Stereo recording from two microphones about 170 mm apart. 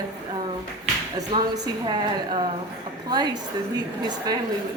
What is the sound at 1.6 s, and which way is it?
A woman's voice, 25° right (ahead or behind).